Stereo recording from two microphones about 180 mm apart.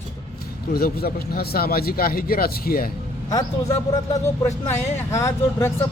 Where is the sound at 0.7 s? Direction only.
55° left (ahead or behind).